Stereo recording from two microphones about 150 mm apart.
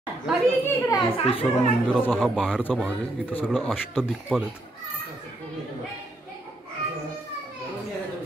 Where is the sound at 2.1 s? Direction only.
5° right (ahead or behind).